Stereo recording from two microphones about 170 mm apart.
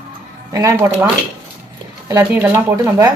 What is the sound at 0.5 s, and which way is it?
Speech, 15° right (ahead or behind).